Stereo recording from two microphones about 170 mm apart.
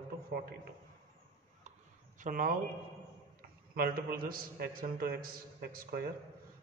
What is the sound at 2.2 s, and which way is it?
Speech, 50° right (ahead or behind).